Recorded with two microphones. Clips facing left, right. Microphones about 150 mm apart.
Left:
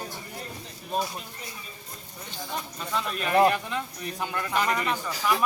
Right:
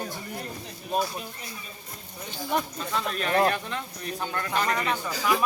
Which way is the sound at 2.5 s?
60° right (ahead or behind).